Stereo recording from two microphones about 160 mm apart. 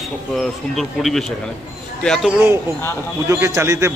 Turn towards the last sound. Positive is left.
turn(degrees=-15)  # may be behind; listen again after turning